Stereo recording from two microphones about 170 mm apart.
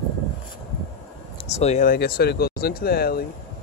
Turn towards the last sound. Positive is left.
turn(degrees=65)  # may be behind; listen again after turning